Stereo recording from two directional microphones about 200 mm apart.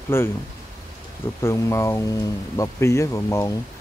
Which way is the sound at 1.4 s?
15° left (ahead or behind).